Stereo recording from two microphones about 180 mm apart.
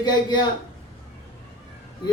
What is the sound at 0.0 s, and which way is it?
Speech, 25° left (ahead or behind).